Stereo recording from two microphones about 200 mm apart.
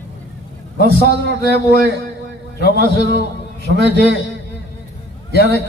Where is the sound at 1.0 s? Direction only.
55° right (ahead or behind).